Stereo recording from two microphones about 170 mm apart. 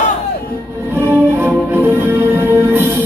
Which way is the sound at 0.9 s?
15° right (ahead or behind).